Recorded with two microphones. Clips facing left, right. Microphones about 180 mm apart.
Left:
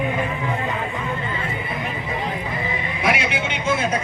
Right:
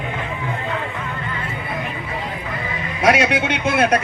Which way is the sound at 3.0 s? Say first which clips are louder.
Right 7 dB; 75° right (ahead or behind).